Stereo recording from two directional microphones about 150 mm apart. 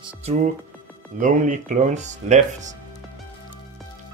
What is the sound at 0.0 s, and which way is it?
Music, 45° right (ahead or behind).